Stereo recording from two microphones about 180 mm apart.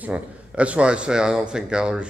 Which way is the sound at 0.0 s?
5° right (ahead or behind).